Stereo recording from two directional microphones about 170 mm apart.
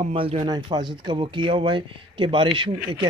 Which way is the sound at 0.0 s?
35° right (ahead or behind).